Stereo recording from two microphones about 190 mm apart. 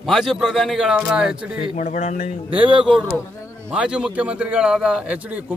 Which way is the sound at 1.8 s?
35° left (ahead or behind).